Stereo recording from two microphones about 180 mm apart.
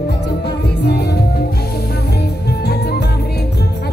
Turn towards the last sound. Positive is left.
turn(degrees=65)  # may be behind; listen again after turning